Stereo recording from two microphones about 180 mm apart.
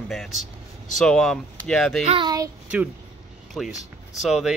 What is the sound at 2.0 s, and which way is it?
Speech, 25° right (ahead or behind).